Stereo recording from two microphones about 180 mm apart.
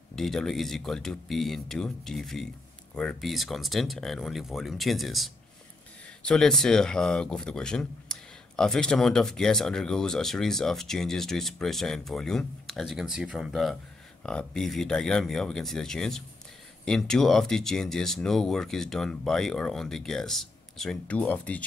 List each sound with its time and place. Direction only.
0.1 s speech: centre (ahead or behind)